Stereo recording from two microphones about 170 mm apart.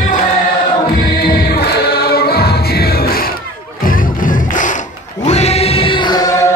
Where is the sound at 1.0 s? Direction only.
65° left (ahead or behind).